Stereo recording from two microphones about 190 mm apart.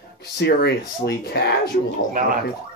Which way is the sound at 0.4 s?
60° left (ahead or behind).